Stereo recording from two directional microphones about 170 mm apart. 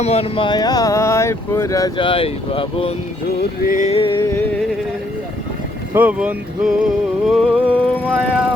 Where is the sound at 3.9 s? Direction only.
30° left (ahead or behind).